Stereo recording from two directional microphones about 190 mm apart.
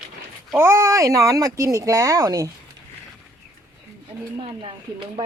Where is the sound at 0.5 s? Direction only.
15° right (ahead or behind).